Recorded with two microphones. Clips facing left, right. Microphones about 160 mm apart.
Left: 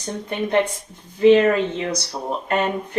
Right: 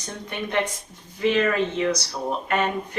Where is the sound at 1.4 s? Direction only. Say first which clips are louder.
Left 3 dB; 30° left (ahead or behind).